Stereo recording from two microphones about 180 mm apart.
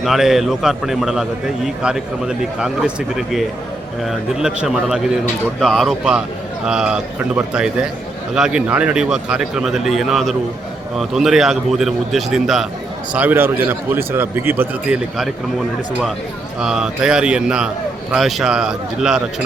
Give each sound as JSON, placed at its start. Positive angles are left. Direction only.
{"t": 0.0, "sound": "a man's voice", "side_deg": 0}
{"t": 16.6, "sound": "a man's voice", "side_deg": -5}